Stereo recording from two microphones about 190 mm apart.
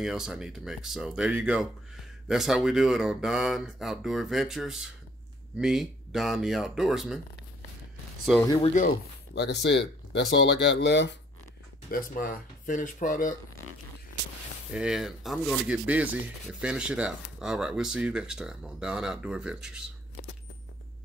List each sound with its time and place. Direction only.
0.0 s speech: 5° right (ahead or behind)
8.5 s speech: 30° left (ahead or behind)
8.8 s speech: 60° left (ahead or behind)
11.9 s speech: 50° left (ahead or behind)
14.7 s speech: 5° right (ahead or behind)